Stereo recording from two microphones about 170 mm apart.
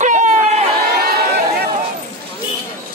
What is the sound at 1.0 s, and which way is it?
Run, 65° right (ahead or behind).